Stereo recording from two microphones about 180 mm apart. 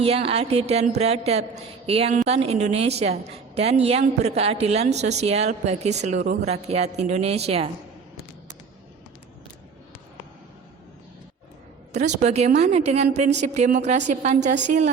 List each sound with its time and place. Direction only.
0.0 s a woman's voice: 35° right (ahead or behind)
11.9 s a woman's voice: 40° right (ahead or behind)